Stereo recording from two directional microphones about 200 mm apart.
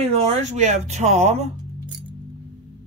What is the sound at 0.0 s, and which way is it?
A man's voice, 35° right (ahead or behind).